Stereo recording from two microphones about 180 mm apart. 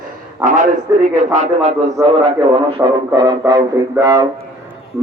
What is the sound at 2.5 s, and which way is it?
Music, 30° right (ahead or behind).